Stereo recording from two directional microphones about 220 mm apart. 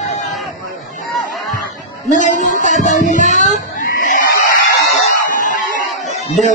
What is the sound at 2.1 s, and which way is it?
Music, 35° left (ahead or behind).